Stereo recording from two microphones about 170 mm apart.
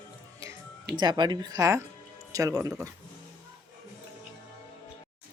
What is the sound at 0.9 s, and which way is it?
Speech, 25° right (ahead or behind).